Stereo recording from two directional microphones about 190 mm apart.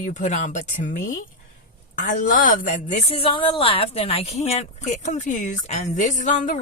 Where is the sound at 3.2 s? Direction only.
30° left (ahead or behind).